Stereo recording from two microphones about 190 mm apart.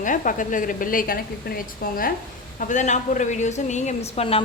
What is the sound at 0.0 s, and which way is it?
A woman's voice, 45° left (ahead or behind).